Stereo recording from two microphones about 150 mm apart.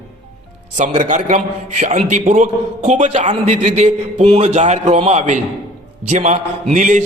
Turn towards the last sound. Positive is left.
turn(degrees=-55)  # may be behind; listen again after turning